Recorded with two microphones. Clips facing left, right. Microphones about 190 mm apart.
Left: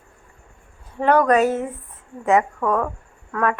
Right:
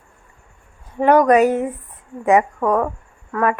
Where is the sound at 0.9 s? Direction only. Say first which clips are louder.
Right 4 dB; 15° right (ahead or behind).